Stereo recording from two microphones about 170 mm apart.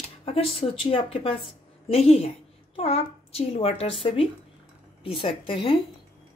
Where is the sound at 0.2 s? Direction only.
35° left (ahead or behind).